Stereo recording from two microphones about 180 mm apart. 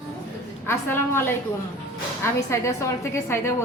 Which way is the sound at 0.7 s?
15° left (ahead or behind).